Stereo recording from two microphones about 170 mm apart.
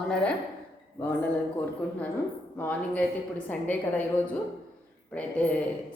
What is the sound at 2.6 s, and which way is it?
A woman's voice, 10° left (ahead or behind).